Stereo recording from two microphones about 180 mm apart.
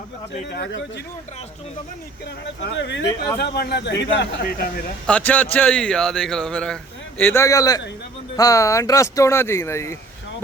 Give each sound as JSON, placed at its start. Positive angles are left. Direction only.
{"t": 0.5, "sound": "speech", "side_deg": 85}
{"t": 2.7, "sound": "speech", "side_deg": 80}
{"t": 5.0, "sound": "a man's voice", "side_deg": 5}